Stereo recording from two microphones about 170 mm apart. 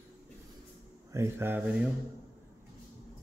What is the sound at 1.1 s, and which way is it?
Speech, 15° right (ahead or behind).